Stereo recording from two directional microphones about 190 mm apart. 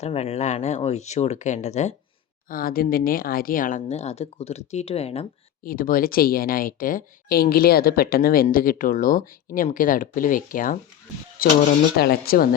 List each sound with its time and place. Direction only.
0.0 s speech: 35° left (ahead or behind)
2.5 s speech: 50° left (ahead or behind); by 5.2 s 30° left (ahead or behind)
5.6 s speech: 45° left (ahead or behind)